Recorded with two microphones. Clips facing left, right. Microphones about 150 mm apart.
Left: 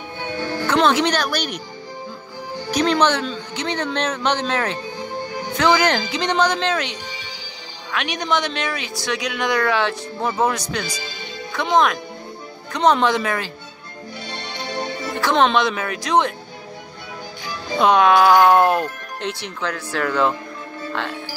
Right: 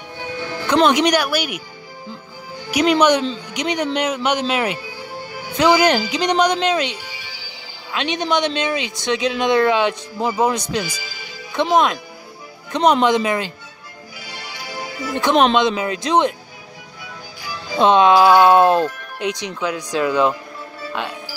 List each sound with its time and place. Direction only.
0.4 s music: 10° right (ahead or behind)
0.8 s speech: 15° right (ahead or behind)
2.7 s speech: 10° right (ahead or behind)
5.1 s music: 20° left (ahead or behind)
5.6 s speech: 15° right (ahead or behind)
14.3 s music: 25° left (ahead or behind)
15.5 s speech: 20° right (ahead or behind)
17.7 s speech: 25° right (ahead or behind)